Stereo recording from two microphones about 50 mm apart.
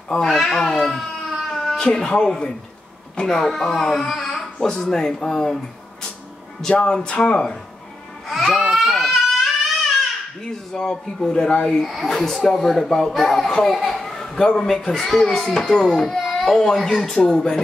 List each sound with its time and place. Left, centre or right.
0.3 s speech: centre
1.5 s cat: centre
1.8 s a child's voice: centre
6.8 s a child's voice: centre
8.3 s crying: centre
10.7 s a child's voice: centre
11.8 s speech: centre
12.1 s a child's voice: centre